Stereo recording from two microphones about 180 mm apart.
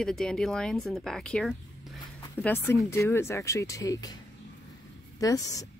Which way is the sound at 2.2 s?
10° left (ahead or behind).